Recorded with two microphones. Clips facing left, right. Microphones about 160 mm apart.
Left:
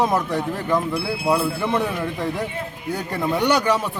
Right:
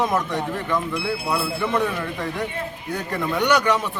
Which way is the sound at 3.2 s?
30° left (ahead or behind).